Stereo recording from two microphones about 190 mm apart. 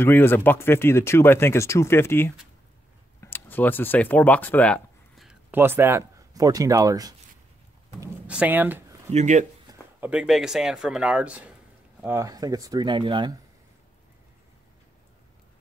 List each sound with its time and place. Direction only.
0.0 s speech: 10° left (ahead or behind); by 7.2 s 20° right (ahead or behind)
8.3 s speech: 10° right (ahead or behind)
9.1 s speech: 40° right (ahead or behind)
9.7 s speech: 10° right (ahead or behind); by 13.3 s 25° right (ahead or behind)